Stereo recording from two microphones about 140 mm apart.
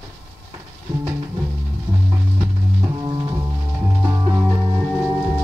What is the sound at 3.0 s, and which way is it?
Music, 25° right (ahead or behind).